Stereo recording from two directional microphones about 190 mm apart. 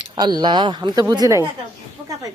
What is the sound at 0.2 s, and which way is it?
Speech, 25° right (ahead or behind).